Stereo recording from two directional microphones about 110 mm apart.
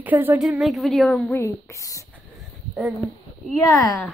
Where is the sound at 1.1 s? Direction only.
15° left (ahead or behind).